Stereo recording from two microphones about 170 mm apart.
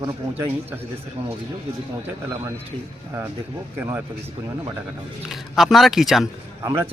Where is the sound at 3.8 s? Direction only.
15° right (ahead or behind).